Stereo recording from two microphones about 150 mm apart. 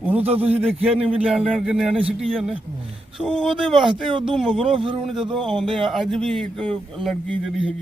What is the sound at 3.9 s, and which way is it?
Speech, 35° right (ahead or behind).